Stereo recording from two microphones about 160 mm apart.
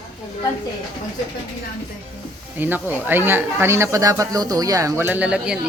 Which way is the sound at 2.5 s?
10° right (ahead or behind).